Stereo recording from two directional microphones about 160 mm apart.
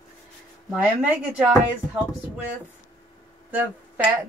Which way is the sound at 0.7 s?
5° right (ahead or behind).